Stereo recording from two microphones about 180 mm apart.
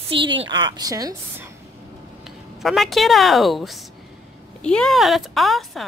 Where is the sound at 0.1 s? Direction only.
30° right (ahead or behind).